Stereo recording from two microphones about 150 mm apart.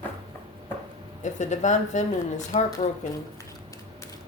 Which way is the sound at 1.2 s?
55° left (ahead or behind).